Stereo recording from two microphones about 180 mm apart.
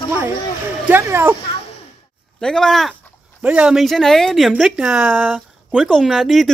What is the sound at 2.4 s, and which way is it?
Speech, 5° left (ahead or behind).